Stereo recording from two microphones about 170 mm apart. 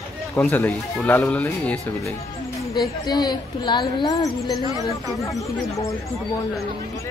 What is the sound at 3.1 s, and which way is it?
A woman's voice, 25° left (ahead or behind).